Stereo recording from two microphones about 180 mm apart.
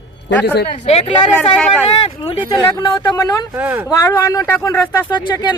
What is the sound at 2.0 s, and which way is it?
Speech, 35° left (ahead or behind).